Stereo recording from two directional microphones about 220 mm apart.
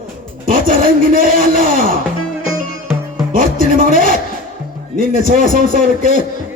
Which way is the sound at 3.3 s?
40° right (ahead or behind).